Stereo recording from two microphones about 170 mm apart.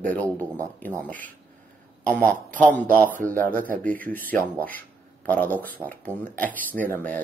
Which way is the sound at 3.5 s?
55° right (ahead or behind).